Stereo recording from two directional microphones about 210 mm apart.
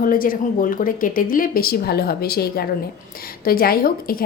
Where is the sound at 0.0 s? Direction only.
40° left (ahead or behind).